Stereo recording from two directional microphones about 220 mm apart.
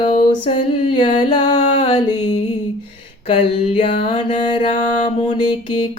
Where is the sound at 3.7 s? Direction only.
25° left (ahead or behind).